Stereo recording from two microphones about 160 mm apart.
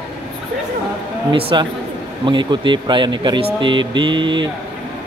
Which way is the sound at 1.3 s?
30° right (ahead or behind).